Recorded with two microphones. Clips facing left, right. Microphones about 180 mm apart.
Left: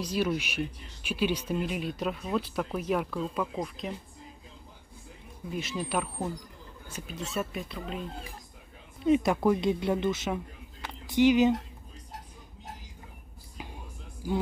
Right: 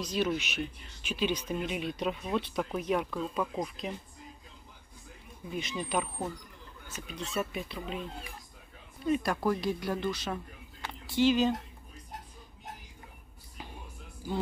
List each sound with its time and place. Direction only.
0.0 s speech: 10° left (ahead or behind)
5.5 s speech: 5° left (ahead or behind)
9.0 s speech: 20° left (ahead or behind)